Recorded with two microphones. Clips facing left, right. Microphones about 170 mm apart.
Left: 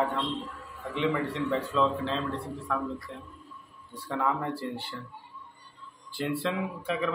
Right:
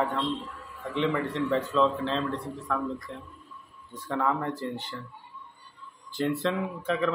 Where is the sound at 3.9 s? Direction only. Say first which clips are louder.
Right 2 dB; 10° left (ahead or behind).